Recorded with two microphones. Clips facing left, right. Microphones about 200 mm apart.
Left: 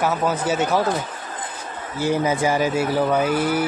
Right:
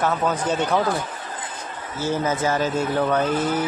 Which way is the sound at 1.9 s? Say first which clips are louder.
Left 3 dB; 15° left (ahead or behind).